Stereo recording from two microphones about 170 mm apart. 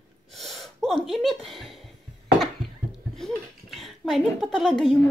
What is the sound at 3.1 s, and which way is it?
Speech, centre (ahead or behind).